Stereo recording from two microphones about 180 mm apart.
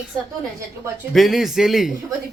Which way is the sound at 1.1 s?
Centre (ahead or behind).